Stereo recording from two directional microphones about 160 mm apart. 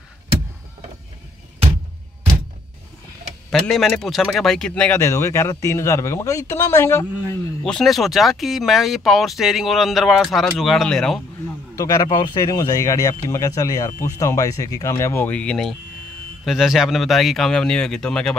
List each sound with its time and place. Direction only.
3.4 s a man's voice: 5° left (ahead or behind)
7.6 s speech: centre (ahead or behind)
11.7 s speech: 20° left (ahead or behind); by 18.3 s 5° left (ahead or behind)